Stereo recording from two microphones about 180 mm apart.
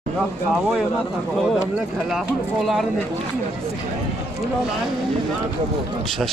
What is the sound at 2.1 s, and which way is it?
Speech, centre (ahead or behind).